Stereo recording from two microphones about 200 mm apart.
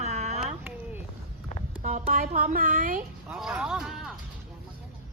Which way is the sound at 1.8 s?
40° right (ahead or behind).